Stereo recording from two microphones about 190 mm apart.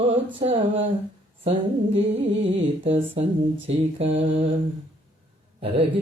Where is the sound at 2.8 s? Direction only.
30° right (ahead or behind).